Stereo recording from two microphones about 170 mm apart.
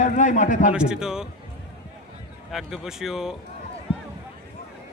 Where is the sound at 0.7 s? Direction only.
5° right (ahead or behind).